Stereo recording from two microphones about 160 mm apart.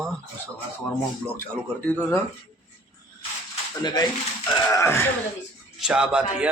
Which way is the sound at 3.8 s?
25° left (ahead or behind).